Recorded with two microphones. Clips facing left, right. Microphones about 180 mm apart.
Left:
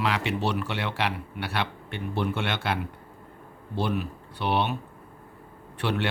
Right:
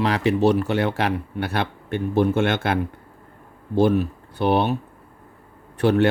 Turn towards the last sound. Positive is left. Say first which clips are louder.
# right 10 dB
turn(degrees=-45)  # may be behind; listen again after turning